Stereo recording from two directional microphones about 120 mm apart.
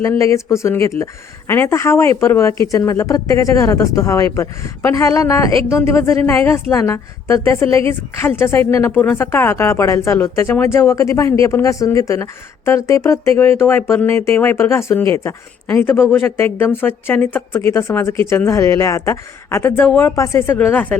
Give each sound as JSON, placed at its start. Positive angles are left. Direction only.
{"t": 0.0, "sound": "speech", "side_deg": 25}